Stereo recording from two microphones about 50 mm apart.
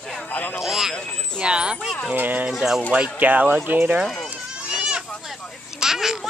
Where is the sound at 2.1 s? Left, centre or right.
Right.